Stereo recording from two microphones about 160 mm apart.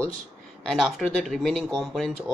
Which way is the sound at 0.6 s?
Centre (ahead or behind).